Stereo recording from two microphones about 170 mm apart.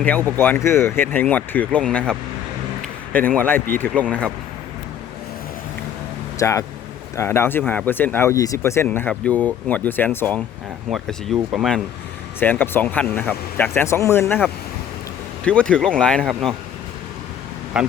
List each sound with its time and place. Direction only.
0.0 s speech: 10° left (ahead or behind)
3.2 s speech: 10° left (ahead or behind)
6.4 s speech: 20° left (ahead or behind)
10.8 s speech: centre (ahead or behind)
12.4 s speech: 10° left (ahead or behind)
15.4 s speech: 5° left (ahead or behind)
17.7 s speech: 5° right (ahead or behind)